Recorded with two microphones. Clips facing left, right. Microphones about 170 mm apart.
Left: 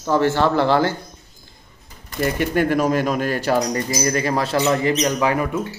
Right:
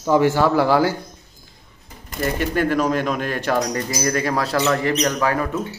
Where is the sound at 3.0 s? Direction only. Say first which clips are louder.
Left 2 dB; 5° left (ahead or behind).